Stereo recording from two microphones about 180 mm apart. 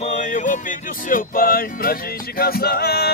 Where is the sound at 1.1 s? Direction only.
55° left (ahead or behind).